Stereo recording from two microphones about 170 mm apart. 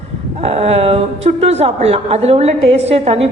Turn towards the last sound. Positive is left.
turn(degrees=-35)  # may be behind; listen again after turning